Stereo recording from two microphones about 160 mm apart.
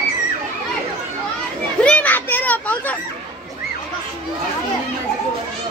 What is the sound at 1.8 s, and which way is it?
Children playing, 10° left (ahead or behind).